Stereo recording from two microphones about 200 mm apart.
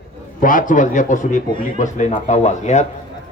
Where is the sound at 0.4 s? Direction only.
40° left (ahead or behind).